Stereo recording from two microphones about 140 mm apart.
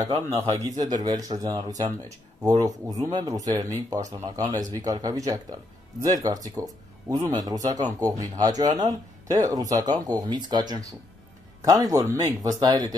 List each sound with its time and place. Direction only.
0.0 s speech: 30° right (ahead or behind)